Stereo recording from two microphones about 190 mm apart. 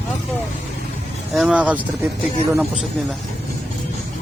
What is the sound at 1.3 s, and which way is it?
Speech, 5° right (ahead or behind).